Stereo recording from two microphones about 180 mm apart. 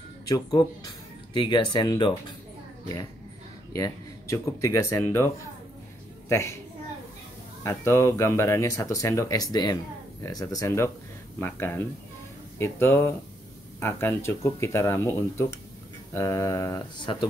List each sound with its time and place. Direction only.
0.3 s speech: 20° left (ahead or behind)
3.7 s a woman's voice: 20° left (ahead or behind)
7.6 s speech: 15° left (ahead or behind)